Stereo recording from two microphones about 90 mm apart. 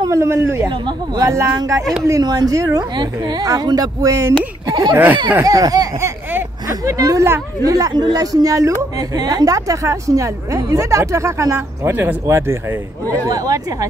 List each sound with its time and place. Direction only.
0.0 s speech: 35° right (ahead or behind)
0.7 s speech: 60° right (ahead or behind)
1.2 s a woman's voice: 35° right (ahead or behind)
3.0 s speech: 55° right (ahead or behind)
4.9 s speech: 20° right (ahead or behind)
5.4 s a woman's voice: 40° right (ahead or behind)
13.1 s a woman's voice: 40° right (ahead or behind)